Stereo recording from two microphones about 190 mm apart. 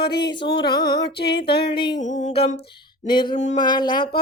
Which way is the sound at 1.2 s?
55° left (ahead or behind).